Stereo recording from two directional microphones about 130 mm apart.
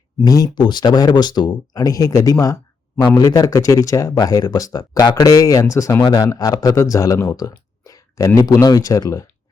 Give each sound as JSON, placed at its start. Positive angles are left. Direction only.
{"t": 0.2, "sound": "speech", "side_deg": 25}
{"t": 6.0, "sound": "speech", "side_deg": 35}